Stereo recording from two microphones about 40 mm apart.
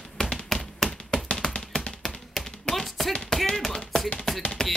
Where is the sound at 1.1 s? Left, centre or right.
Left.